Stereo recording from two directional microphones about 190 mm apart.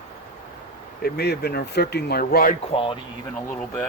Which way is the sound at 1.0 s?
60° left (ahead or behind).